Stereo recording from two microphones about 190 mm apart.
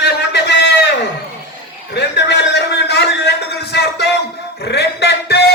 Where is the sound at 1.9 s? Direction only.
65° left (ahead or behind).